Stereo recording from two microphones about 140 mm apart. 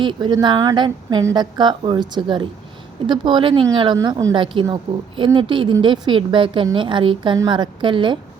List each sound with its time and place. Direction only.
0.0 s a woman's voice: 35° right (ahead or behind)